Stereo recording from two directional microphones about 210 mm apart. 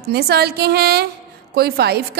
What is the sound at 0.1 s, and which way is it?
A woman's voice, 50° right (ahead or behind).